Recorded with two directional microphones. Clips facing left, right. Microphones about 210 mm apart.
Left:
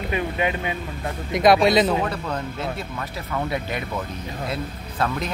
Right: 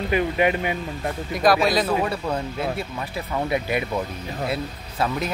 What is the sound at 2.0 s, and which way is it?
Speech, 10° right (ahead or behind).